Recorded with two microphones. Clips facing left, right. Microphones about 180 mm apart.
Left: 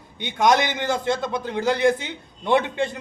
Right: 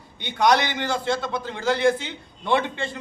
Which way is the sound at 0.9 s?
20° left (ahead or behind).